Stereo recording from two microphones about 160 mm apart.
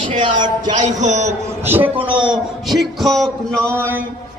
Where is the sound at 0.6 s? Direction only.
50° right (ahead or behind).